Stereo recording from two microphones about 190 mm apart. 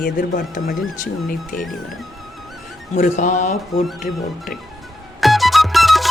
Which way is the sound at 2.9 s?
40° left (ahead or behind).